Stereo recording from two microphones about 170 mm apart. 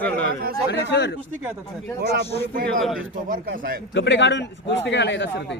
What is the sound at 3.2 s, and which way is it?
Speech, 55° right (ahead or behind).